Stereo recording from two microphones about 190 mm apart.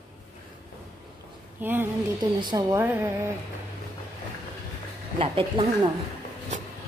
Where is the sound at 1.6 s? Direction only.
10° right (ahead or behind).